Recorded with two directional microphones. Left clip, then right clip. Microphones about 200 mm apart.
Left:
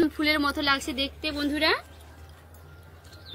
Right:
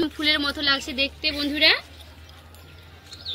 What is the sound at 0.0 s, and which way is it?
A woman's voice, 30° left (ahead or behind).